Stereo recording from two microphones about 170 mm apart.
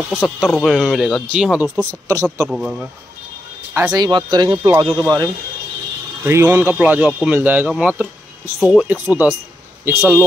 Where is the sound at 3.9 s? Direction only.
25° right (ahead or behind).